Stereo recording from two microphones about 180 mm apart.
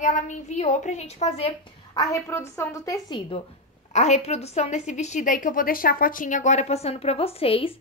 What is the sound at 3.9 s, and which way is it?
A woman's voice, 40° left (ahead or behind).